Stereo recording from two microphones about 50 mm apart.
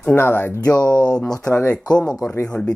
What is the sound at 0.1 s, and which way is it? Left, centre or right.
Speech, left.